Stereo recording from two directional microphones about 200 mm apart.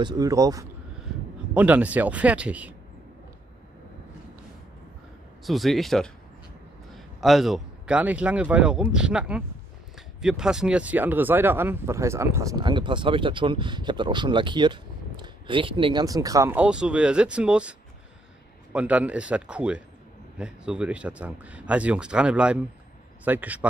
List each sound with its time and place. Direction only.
0.0 s speech: 20° right (ahead or behind)
5.4 s a man's voice: centre (ahead or behind)